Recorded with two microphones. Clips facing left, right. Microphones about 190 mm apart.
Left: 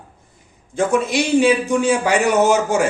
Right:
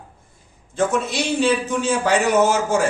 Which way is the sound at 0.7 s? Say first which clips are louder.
Left 3 dB; 15° left (ahead or behind).